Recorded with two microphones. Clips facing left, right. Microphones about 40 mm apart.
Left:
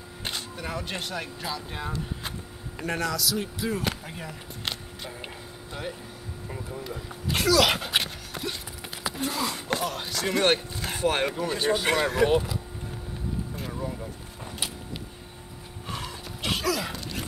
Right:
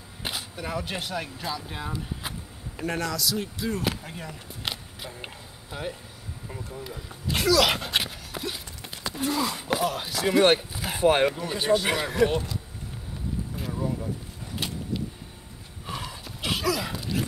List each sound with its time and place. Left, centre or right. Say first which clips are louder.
0.2 s speech: right 1 dB; centre
13.6 s vehicle: right 3 dB; centre
15.9 s a sound: even; centre